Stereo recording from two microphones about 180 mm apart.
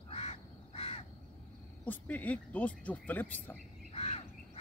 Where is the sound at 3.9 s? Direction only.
35° left (ahead or behind).